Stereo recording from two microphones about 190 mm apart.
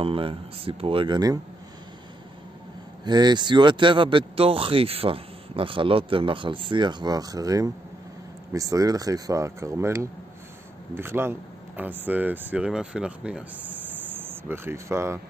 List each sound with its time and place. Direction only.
0.0 s speech: 30° right (ahead or behind)
3.1 s speech: 20° right (ahead or behind)